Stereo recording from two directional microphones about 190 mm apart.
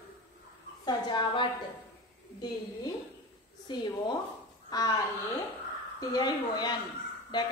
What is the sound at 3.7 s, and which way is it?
Speech, 25° left (ahead or behind).